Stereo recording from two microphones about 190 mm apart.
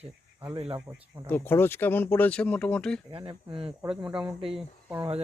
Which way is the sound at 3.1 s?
30° right (ahead or behind).